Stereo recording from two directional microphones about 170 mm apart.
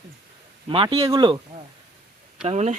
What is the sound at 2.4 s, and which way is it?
Speech, 40° right (ahead or behind).